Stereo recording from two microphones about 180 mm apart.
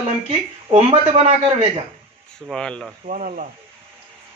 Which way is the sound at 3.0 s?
45° right (ahead or behind).